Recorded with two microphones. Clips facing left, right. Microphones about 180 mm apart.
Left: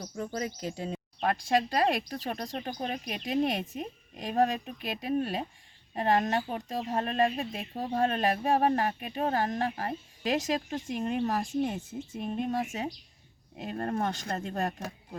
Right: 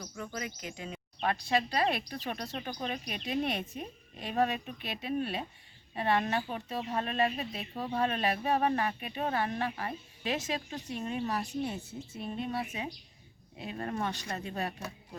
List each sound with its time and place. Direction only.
0.0 s speech: 35° left (ahead or behind)
1.2 s a woman's voice: 45° left (ahead or behind)